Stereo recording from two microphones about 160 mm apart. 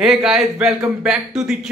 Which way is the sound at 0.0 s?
5° right (ahead or behind).